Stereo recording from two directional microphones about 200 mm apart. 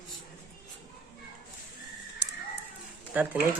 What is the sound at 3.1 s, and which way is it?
Speech, 5° right (ahead or behind).